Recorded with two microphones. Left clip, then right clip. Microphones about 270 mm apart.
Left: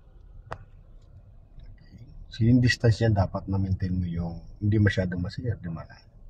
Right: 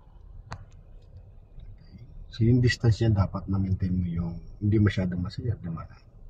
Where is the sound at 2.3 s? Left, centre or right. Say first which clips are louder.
Left 2 dB; left.